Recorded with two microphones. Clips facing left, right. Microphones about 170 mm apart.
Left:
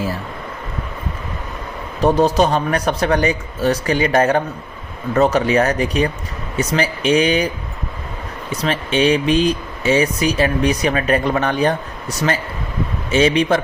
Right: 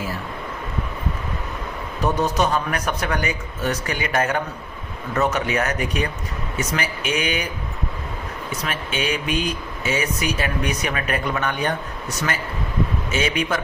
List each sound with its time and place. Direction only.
2.0 s speech: 35° left (ahead or behind)
8.6 s speech: 30° left (ahead or behind)
13.1 s speech: 30° left (ahead or behind)